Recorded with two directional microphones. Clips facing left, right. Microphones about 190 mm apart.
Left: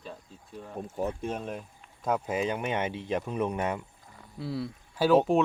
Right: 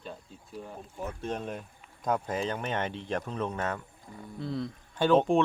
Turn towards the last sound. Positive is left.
turn(degrees=5)  # may be behind; listen again after turning